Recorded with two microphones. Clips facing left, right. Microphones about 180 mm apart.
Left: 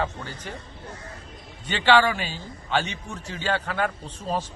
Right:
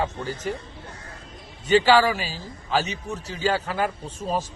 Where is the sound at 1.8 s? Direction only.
5° right (ahead or behind).